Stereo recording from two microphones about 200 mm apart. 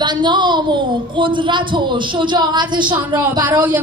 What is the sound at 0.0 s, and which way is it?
Speech, 20° right (ahead or behind).